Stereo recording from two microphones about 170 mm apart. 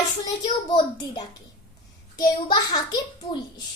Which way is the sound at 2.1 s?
25° left (ahead or behind).